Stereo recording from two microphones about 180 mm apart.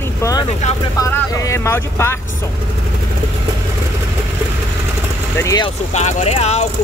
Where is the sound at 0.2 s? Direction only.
20° left (ahead or behind).